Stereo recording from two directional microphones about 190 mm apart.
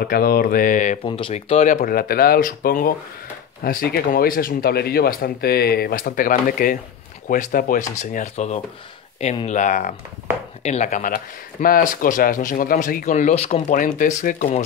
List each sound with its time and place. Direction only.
0.0 s speech: 50° left (ahead or behind)
1.0 s speech: 25° left (ahead or behind); by 14.6 s 45° left (ahead or behind)